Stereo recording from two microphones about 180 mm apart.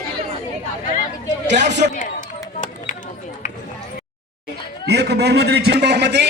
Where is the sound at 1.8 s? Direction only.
50° right (ahead or behind).